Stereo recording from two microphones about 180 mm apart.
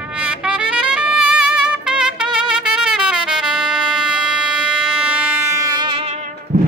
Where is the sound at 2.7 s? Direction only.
5° right (ahead or behind); by 6.0 s 25° right (ahead or behind).